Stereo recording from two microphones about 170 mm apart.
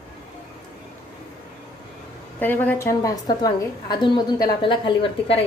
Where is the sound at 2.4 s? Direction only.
10° left (ahead or behind); by 5.4 s 30° left (ahead or behind).